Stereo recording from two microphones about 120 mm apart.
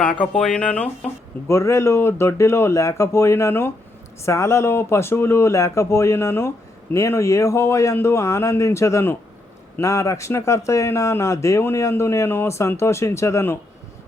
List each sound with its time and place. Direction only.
0.0 s speech: 10° left (ahead or behind)
1.5 s speech: 25° left (ahead or behind)